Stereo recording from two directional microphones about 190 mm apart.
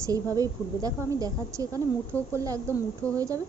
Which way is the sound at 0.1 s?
20° right (ahead or behind).